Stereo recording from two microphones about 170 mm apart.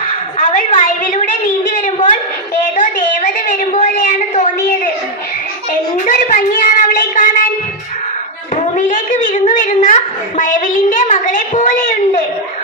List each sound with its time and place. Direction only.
0.3 s a sound: 45° left (ahead or behind)
6.1 s child singing: 50° left (ahead or behind)
8.5 s a woman's voice: 50° left (ahead or behind)